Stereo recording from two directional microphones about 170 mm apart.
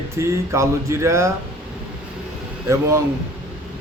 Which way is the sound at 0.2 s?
15° right (ahead or behind).